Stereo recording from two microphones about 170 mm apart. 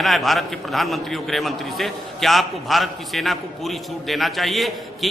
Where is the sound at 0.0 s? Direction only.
Centre (ahead or behind).